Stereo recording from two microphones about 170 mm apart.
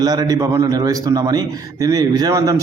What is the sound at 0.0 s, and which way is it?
A man's voice, 25° right (ahead or behind).